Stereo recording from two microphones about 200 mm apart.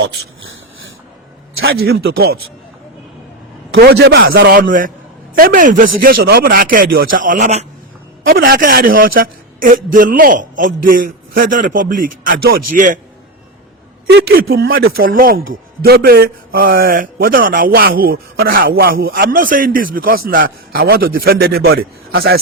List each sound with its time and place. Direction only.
1.7 s speech: 50° right (ahead or behind)
3.8 s speech: 55° right (ahead or behind); by 7.7 s 35° right (ahead or behind)
8.3 s speech: 45° right (ahead or behind)
14.1 s speech: 50° right (ahead or behind)